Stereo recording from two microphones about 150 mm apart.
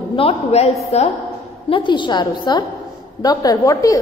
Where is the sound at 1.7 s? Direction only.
30° left (ahead or behind).